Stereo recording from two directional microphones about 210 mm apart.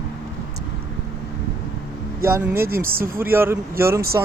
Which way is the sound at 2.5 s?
45° right (ahead or behind).